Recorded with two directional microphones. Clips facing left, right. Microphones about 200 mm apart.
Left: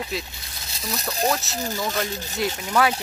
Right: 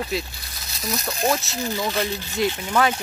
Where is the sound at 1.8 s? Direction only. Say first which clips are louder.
Right 2 dB; 45° left (ahead or behind).